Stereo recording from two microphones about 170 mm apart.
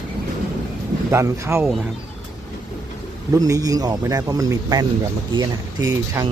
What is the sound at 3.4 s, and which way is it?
A man's voice, 20° right (ahead or behind).